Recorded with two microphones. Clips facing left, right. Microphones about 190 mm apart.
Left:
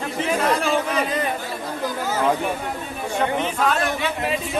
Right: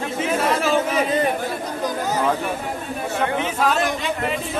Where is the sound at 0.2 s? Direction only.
5° right (ahead or behind).